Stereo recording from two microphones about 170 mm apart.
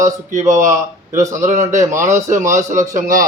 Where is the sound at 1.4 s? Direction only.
45° right (ahead or behind).